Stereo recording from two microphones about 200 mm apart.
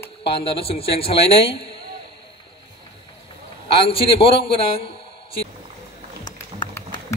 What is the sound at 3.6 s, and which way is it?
Speech, 25° left (ahead or behind).